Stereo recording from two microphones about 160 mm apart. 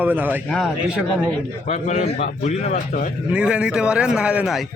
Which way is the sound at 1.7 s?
45° left (ahead or behind).